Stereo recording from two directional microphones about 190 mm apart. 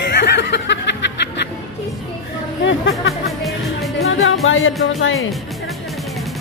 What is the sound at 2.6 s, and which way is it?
Speech, 75° left (ahead or behind).